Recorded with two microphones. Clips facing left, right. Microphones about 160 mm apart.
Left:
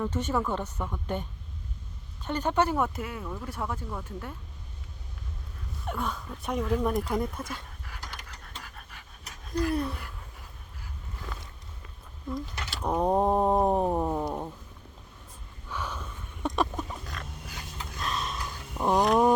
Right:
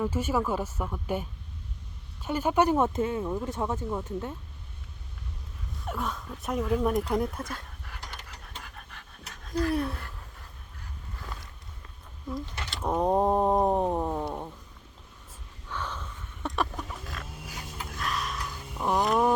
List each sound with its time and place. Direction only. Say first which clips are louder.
0.0 s speech: right 1 dB; 5° right (ahead or behind)
5.8 s speech: left 1 dB; centre (ahead or behind)
8.6 s dog: right 1 dB; 5° left (ahead or behind)
9.7 s speech: right 1 dB; centre (ahead or behind)
12.3 s speech: left 1 dB; centre (ahead or behind)
14.3 s cat: left 2 dB; 10° left (ahead or behind)
15.7 s a sound: even; 10° left (ahead or behind)
17.0 s dog: even; 5° right (ahead or behind)
18.0 s a sound: even; 25° left (ahead or behind)
18.8 s speech: left 2 dB; 20° left (ahead or behind)